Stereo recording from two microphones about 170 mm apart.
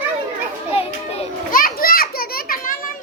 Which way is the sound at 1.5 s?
55° left (ahead or behind).